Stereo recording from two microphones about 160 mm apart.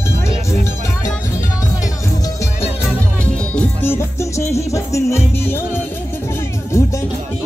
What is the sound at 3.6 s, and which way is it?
Music, 15° left (ahead or behind).